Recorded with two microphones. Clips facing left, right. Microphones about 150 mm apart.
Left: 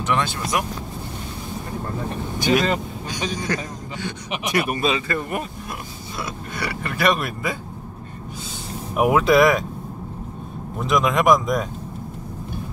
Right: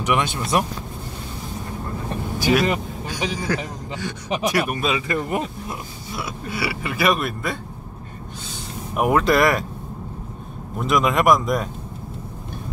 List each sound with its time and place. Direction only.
0.0 s speech: 15° right (ahead or behind)
2.3 s a man's voice: 5° right (ahead or behind)
5.0 s speech: 20° right (ahead or behind)
6.1 s speech: 5° right (ahead or behind)
8.9 s speech: 5° left (ahead or behind)
10.8 s speech: centre (ahead or behind)